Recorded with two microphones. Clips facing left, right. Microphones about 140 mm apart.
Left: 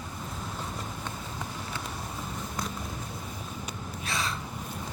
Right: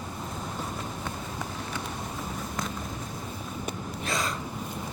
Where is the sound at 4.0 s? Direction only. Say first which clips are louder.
Right 3 dB; 45° right (ahead or behind).